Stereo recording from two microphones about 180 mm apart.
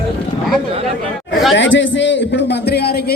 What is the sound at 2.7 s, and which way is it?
Speech, 65° left (ahead or behind).